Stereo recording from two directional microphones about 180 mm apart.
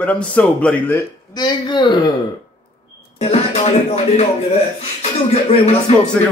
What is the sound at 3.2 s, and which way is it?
Music, 35° left (ahead or behind).